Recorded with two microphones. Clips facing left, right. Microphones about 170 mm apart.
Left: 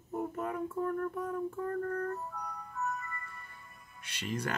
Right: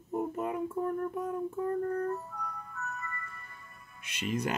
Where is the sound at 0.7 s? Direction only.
20° right (ahead or behind).